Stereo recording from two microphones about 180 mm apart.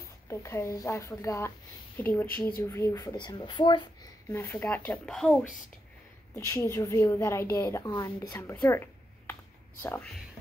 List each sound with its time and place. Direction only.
0.3 s a woman's voice: 15° left (ahead or behind)
4.3 s a woman's voice: 15° left (ahead or behind)
6.3 s a woman's voice: 15° left (ahead or behind)
9.3 s computer keyboard: 10° left (ahead or behind)